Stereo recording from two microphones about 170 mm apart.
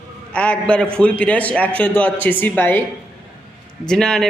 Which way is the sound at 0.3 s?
5° left (ahead or behind).